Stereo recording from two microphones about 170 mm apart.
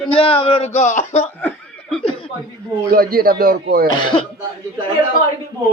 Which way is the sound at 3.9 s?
25° left (ahead or behind).